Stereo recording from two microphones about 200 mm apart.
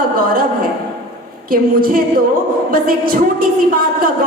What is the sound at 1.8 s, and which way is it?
A woman's voice, 45° right (ahead or behind).